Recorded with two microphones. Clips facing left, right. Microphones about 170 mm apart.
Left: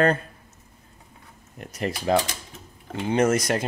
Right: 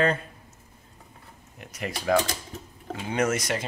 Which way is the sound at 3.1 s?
35° left (ahead or behind).